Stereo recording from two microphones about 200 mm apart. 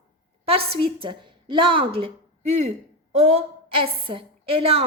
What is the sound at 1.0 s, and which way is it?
Speech, 25° right (ahead or behind).